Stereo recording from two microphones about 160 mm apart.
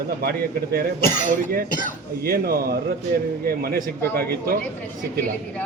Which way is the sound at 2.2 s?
70° right (ahead or behind).